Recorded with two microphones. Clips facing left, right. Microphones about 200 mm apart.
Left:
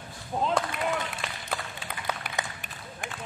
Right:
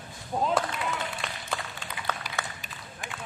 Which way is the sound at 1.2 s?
Centre (ahead or behind).